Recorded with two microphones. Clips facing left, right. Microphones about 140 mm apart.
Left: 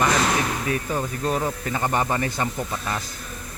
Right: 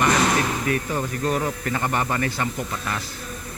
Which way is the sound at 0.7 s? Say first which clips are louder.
Right 2 dB; 25° left (ahead or behind).